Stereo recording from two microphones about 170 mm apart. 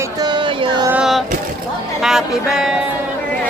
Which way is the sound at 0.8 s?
5° right (ahead or behind).